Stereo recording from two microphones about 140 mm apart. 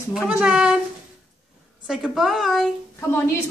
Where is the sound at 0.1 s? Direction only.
5° right (ahead or behind).